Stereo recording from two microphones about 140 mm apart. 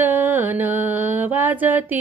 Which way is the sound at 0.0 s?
15° right (ahead or behind).